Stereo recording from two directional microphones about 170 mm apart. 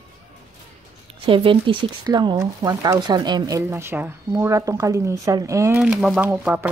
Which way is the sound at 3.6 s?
15° right (ahead or behind).